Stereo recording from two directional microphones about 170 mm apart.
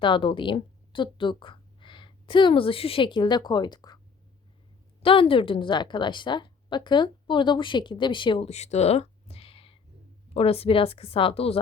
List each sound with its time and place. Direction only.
0.0 s a woman's voice: 30° left (ahead or behind)
5.0 s a woman's voice: 30° left (ahead or behind)